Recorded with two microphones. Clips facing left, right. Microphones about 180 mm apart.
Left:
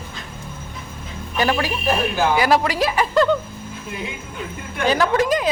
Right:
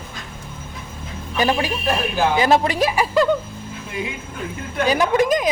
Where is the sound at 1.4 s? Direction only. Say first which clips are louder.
Right 1 dB; 20° right (ahead or behind).